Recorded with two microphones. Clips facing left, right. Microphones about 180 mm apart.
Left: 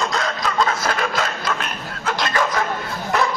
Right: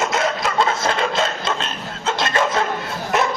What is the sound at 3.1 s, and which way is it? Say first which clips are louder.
Dog: right 1 dB; 20° right (ahead or behind).